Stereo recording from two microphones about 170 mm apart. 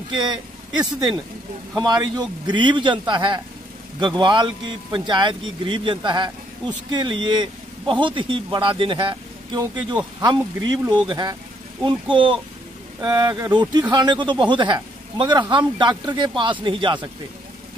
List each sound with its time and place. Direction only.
0.7 s speech: 25° right (ahead or behind)